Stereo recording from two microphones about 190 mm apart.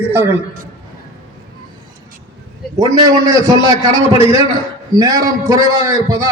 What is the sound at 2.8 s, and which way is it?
A man's voice, 20° right (ahead or behind).